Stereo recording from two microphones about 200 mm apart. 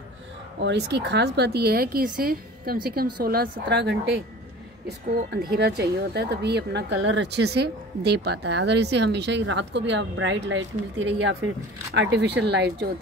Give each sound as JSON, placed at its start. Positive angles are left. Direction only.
{"t": 0.6, "sound": "a woman's voice", "side_deg": -60}
{"t": 5.3, "sound": "speech", "side_deg": -55}